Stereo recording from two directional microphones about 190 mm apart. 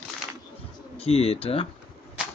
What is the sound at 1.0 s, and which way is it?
Speech, 30° left (ahead or behind).